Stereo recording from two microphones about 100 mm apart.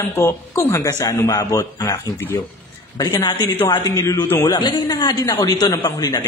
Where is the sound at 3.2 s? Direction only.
50° left (ahead or behind).